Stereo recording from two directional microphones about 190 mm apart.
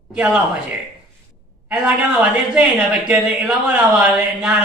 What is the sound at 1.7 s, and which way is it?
A man's voice, 5° right (ahead or behind).